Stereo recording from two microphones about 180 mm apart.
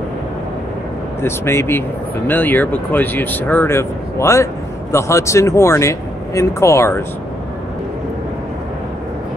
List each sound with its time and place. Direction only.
1.2 s speech: 15° left (ahead or behind)